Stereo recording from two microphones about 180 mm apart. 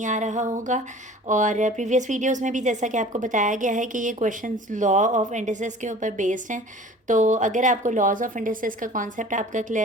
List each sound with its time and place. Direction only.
0.0 s speech: 40° right (ahead or behind)